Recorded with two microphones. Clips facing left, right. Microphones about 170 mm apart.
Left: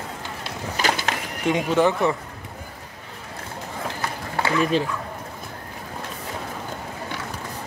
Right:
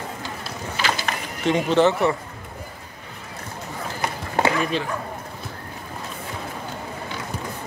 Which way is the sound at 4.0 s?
20° right (ahead or behind).